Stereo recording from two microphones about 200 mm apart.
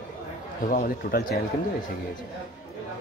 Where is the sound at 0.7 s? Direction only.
45° left (ahead or behind).